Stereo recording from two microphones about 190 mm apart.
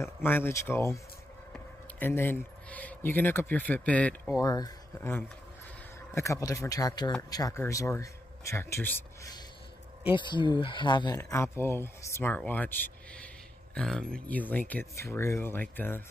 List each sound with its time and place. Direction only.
0.0 s speech: 10° left (ahead or behind)
4.4 s speech: 20° left (ahead or behind)
11.1 s speech: 15° left (ahead or behind)